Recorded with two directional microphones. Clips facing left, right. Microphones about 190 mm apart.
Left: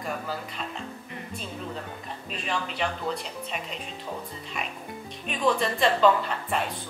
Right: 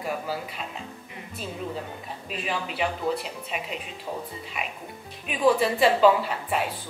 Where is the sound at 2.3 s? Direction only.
5° right (ahead or behind).